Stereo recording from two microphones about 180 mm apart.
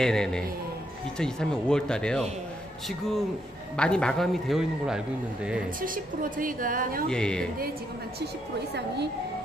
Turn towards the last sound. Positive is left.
turn(degrees=5)  # may be behind; listen again after turning